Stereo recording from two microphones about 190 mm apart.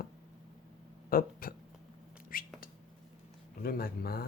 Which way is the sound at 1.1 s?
50° left (ahead or behind).